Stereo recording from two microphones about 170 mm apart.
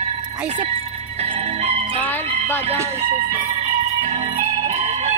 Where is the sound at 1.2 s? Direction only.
40° right (ahead or behind).